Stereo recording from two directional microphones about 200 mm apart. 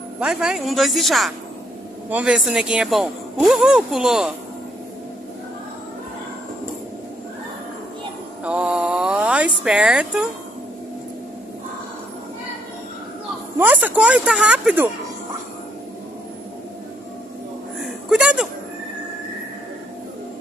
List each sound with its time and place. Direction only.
0.2 s speech: 5° right (ahead or behind)
8.5 s mantra: 5° right (ahead or behind)
9.7 s speech: 5° right (ahead or behind)
13.6 s speech: 10° right (ahead or behind)
18.1 s speech: 5° right (ahead or behind)